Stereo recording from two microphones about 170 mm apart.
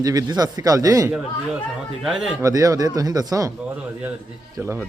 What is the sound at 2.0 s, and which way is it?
Speech, centre (ahead or behind).